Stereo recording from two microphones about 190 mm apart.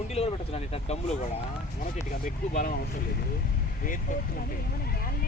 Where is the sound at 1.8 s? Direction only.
45° left (ahead or behind).